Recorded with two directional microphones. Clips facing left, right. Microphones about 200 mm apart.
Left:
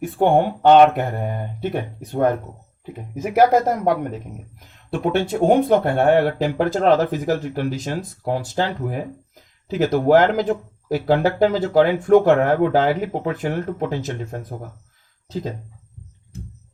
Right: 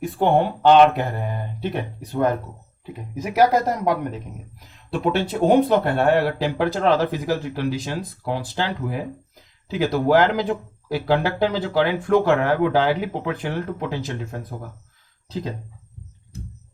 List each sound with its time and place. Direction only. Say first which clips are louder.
0.0 s speech: left 2 dB; 50° left (ahead or behind)
4.9 s speech: left 2 dB; 45° left (ahead or behind)